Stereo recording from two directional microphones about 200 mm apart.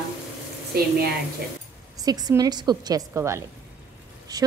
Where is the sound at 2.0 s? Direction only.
20° right (ahead or behind).